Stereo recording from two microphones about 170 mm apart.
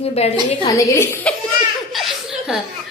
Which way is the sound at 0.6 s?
20° left (ahead or behind).